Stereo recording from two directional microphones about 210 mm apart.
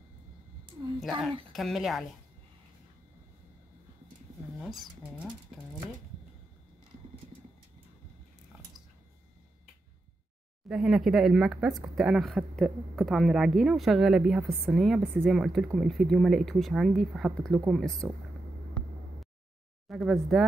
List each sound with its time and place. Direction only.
1.0 s a woman's voice: centre (ahead or behind)
4.6 s speech: centre (ahead or behind)
10.7 s speech: centre (ahead or behind)
19.9 s speech: centre (ahead or behind)